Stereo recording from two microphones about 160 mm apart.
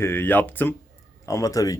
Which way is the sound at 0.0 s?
15° left (ahead or behind).